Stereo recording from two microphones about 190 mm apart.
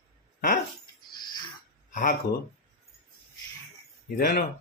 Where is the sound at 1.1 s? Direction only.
25° left (ahead or behind).